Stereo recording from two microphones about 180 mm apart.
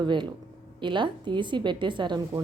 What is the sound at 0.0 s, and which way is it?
A woman's voice, 25° right (ahead or behind).